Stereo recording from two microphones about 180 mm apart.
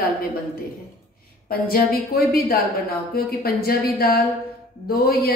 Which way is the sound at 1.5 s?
55° left (ahead or behind).